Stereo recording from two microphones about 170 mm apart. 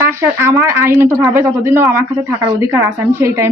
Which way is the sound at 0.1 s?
15° right (ahead or behind).